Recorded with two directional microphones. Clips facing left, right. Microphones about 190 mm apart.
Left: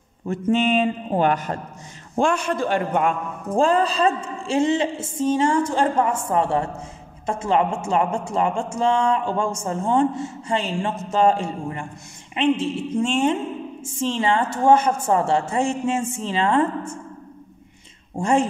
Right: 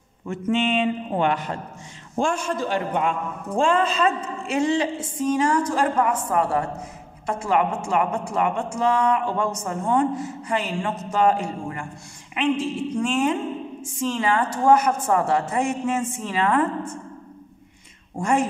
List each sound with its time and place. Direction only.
0.3 s a man's voice: 40° left (ahead or behind)
2.1 s a man's voice: 65° left (ahead or behind); by 3.2 s 50° left (ahead or behind)
3.5 s speech: 35° left (ahead or behind)
18.1 s speech: 25° left (ahead or behind)